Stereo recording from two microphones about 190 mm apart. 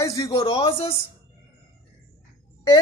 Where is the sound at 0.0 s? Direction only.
15° left (ahead or behind).